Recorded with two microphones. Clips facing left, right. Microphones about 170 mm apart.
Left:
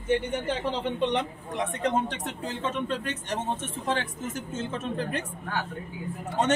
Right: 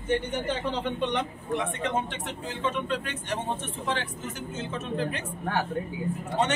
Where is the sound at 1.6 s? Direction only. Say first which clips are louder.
Left 5 dB; 40° left (ahead or behind).